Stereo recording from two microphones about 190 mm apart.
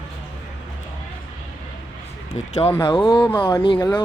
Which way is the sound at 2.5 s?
30° left (ahead or behind).